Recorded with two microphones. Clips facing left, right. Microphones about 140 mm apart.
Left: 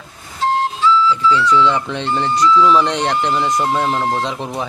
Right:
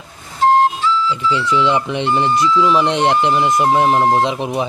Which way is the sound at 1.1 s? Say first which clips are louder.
Left 3 dB; 20° right (ahead or behind).